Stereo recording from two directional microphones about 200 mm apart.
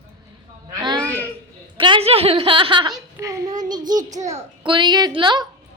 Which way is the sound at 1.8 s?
25° right (ahead or behind).